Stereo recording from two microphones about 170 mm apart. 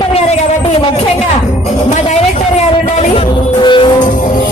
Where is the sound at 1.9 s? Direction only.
45° left (ahead or behind).